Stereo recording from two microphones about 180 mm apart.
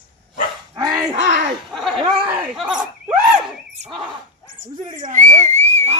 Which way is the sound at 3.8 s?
40° right (ahead or behind).